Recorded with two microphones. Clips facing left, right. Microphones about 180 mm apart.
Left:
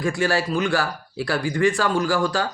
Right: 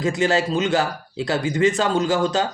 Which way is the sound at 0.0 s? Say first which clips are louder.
Right 2 dB; 20° right (ahead or behind).